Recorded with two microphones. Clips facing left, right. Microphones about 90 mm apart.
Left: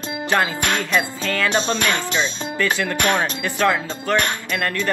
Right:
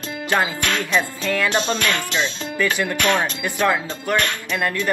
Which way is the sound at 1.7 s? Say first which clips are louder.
Left 1 dB; 20° left (ahead or behind).